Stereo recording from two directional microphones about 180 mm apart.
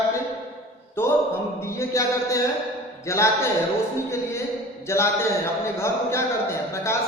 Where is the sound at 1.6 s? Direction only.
15° left (ahead or behind).